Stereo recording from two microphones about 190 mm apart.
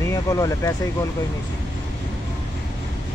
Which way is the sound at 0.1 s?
15° left (ahead or behind).